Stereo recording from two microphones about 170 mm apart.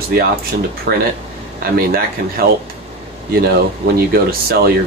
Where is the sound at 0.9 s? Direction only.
80° right.